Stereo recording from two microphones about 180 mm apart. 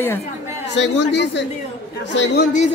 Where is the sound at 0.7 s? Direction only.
75° left (ahead or behind).